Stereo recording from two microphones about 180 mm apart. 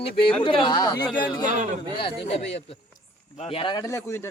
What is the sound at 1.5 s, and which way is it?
Speech, 45° right (ahead or behind).